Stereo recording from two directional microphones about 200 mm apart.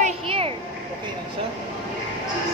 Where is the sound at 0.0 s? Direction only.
30° right (ahead or behind).